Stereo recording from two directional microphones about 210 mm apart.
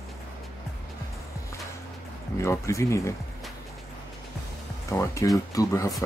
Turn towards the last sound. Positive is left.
turn(degrees=15)  # may be behind; listen again after turning